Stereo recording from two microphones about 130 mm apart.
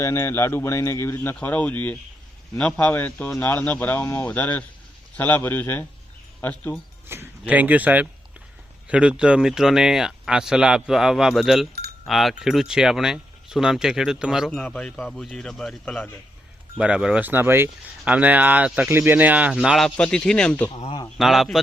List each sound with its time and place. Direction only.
0.0 s speech: 20° left (ahead or behind)
7.1 s speech: 15° right (ahead or behind)
14.6 s speech: 5° left (ahead or behind)
16.7 s speech: 5° right (ahead or behind)
19.8 s speech: 5° left (ahead or behind)